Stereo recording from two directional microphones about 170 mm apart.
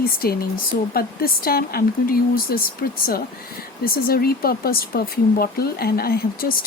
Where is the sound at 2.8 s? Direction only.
70° left (ahead or behind).